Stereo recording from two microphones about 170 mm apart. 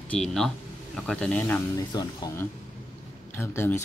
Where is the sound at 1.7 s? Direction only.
25° left (ahead or behind).